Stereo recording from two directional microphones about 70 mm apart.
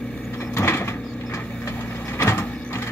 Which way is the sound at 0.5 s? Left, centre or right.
Left.